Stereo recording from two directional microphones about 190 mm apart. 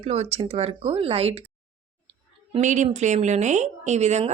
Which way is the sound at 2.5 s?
40° right (ahead or behind).